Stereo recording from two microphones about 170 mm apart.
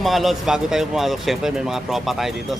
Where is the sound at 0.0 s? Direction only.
Centre (ahead or behind).